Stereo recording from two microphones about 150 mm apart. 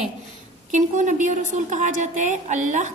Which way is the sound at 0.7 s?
55° right (ahead or behind).